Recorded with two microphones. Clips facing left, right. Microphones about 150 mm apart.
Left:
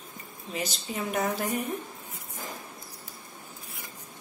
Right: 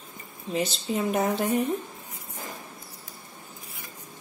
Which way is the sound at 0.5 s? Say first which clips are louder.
Right 6 dB; 30° right (ahead or behind).